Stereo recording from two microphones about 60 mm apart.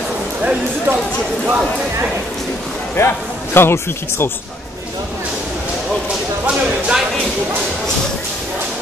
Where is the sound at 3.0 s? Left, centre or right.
Left.